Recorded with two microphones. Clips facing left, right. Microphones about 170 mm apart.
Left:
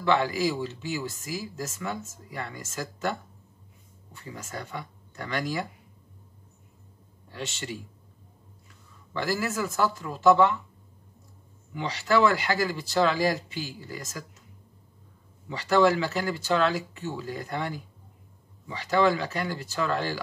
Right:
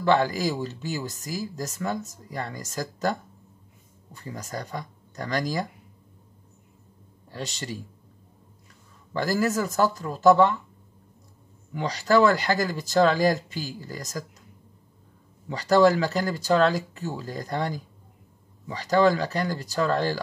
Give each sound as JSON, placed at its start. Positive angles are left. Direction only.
{"t": 0.0, "sound": "speech", "side_deg": -40}
{"t": 7.2, "sound": "speech", "side_deg": -40}
{"t": 9.1, "sound": "speech", "side_deg": -40}
{"t": 11.7, "sound": "speech", "side_deg": -40}
{"t": 15.5, "sound": "speech", "side_deg": -40}